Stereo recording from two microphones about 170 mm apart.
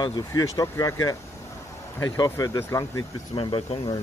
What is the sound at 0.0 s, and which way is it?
Speech, 20° left (ahead or behind).